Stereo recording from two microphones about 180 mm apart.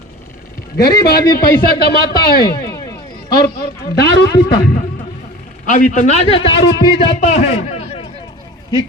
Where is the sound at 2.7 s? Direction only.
20° left (ahead or behind).